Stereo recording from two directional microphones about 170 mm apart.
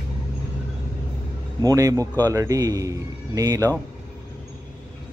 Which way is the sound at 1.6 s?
20° right (ahead or behind).